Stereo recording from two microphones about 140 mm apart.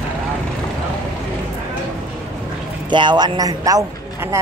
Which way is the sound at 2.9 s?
35° right (ahead or behind).